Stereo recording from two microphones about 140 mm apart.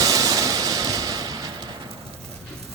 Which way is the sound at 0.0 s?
25° right (ahead or behind).